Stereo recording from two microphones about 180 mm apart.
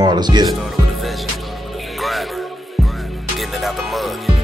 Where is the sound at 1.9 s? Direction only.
Centre (ahead or behind).